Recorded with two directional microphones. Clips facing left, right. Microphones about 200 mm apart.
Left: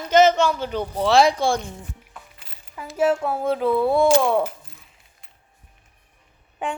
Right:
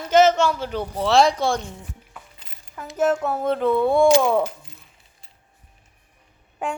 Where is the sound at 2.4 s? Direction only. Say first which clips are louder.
Even; 10° left (ahead or behind).